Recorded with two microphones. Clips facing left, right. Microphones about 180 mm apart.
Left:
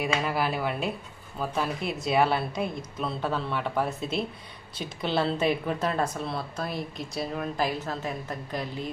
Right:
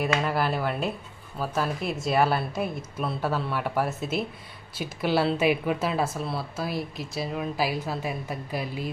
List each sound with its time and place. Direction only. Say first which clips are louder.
0.3 s a woman's voice: right 1 dB; centre (ahead or behind)